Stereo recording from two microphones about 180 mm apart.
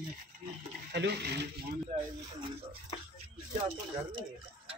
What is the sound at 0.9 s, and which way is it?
Speech, 70° right (ahead or behind).